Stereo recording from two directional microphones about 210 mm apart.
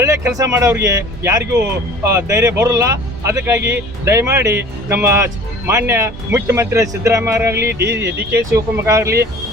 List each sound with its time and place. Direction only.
0.0 s speech: 15° right (ahead or behind)